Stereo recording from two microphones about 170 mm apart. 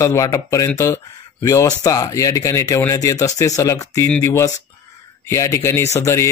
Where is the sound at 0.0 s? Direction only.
20° left (ahead or behind).